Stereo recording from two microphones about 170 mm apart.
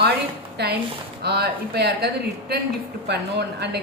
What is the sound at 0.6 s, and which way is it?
A woman's voice, 75° right (ahead or behind).